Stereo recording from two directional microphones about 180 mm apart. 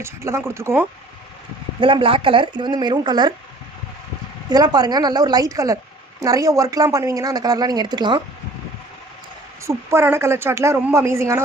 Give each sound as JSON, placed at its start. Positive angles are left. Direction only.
{"t": 0.0, "sound": "speech", "side_deg": -15}
{"t": 1.8, "sound": "a woman's voice", "side_deg": -30}
{"t": 4.5, "sound": "a woman's voice", "side_deg": -20}
{"t": 9.6, "sound": "speech", "side_deg": -15}